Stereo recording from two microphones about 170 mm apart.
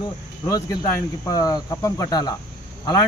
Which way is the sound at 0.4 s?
25° left (ahead or behind).